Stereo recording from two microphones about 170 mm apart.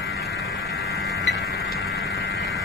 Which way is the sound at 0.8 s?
75° left (ahead or behind).